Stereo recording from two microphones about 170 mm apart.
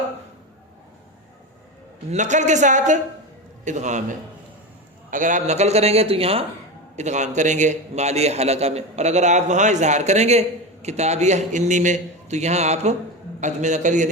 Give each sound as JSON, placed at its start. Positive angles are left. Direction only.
{"t": 2.0, "sound": "a man's voice", "side_deg": -45}
{"t": 5.1, "sound": "a man's voice", "side_deg": -50}